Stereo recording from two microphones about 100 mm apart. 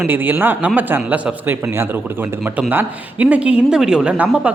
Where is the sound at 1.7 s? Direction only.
25° right (ahead or behind).